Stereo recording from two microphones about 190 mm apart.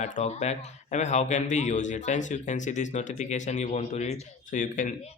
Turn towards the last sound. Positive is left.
turn(degrees=45)  # may be behind; listen again after turning